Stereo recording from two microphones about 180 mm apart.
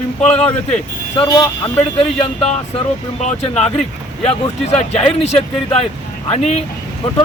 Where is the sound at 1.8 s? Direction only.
35° left (ahead or behind).